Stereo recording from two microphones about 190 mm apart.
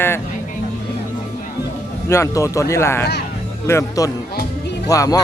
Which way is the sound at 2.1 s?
15° left (ahead or behind).